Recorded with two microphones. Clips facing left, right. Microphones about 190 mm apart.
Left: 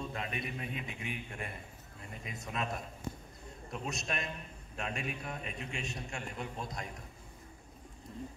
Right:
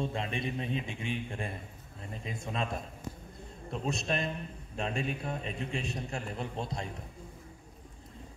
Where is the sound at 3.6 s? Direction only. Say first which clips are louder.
Right 6 dB; 30° right (ahead or behind).